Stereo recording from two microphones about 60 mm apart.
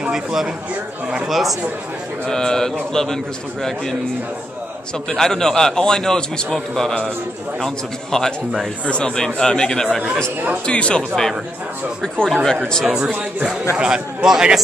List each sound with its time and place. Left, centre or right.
0.1 s speech: centre
2.2 s a man's voice: centre
5.1 s a man's voice: centre
12.8 s a man's voice: centre